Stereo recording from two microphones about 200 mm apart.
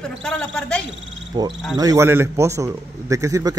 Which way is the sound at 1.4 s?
20° right (ahead or behind).